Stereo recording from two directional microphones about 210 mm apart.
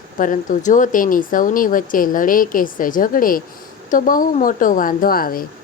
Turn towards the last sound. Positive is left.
turn(degrees=45)  # may be behind; listen again after turning